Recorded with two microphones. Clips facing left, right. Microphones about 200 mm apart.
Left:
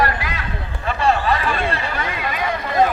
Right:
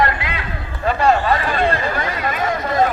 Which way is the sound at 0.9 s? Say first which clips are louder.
Right 3 dB; 35° right (ahead or behind).